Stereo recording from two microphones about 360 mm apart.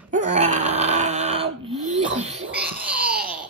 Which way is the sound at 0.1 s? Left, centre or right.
Centre.